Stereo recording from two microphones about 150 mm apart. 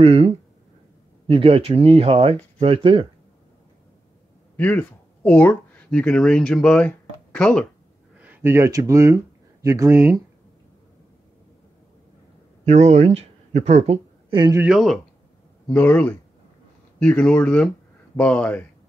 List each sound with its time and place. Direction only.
0.0 s speech: 40° right (ahead or behind)
4.6 s speech: 10° left (ahead or behind)
8.2 s speech: 10° right (ahead or behind)
12.6 s speech: 50° right (ahead or behind)
14.7 s speech: centre (ahead or behind)
15.7 s speech: 10° left (ahead or behind)